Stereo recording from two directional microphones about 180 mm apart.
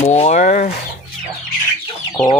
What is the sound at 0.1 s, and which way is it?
Speech, 40° left (ahead or behind).